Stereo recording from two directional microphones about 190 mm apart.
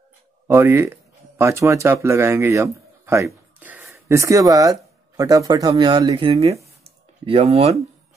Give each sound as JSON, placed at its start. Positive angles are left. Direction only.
{"t": 0.5, "sound": "speech", "side_deg": -15}